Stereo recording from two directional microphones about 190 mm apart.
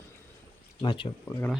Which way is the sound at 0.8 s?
25° left (ahead or behind).